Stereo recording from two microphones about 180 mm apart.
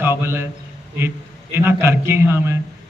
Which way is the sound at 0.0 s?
15° right (ahead or behind).